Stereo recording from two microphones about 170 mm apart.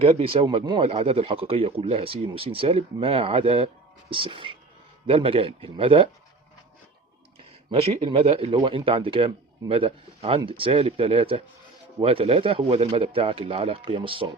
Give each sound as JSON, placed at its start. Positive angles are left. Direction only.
{"t": 0.0, "sound": "a man's voice", "side_deg": -35}
{"t": 7.7, "sound": "a man's voice", "side_deg": -35}